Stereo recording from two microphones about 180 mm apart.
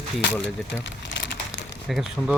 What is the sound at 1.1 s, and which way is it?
Crumpling, 80° left.